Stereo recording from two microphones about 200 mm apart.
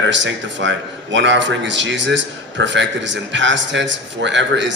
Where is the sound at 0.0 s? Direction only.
65° right (ahead or behind).